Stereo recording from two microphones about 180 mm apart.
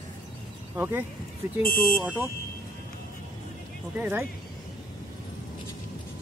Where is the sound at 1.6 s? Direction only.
50° left (ahead or behind).